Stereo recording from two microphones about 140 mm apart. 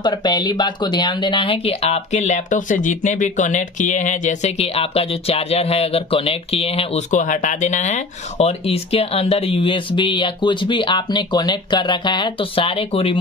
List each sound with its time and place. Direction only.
0.0 s speech: 30° left (ahead or behind)
7.2 s speech: 65° left (ahead or behind); by 13.2 s 40° left (ahead or behind)